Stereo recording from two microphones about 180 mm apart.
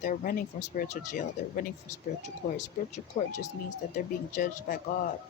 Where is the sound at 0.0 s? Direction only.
45° left (ahead or behind).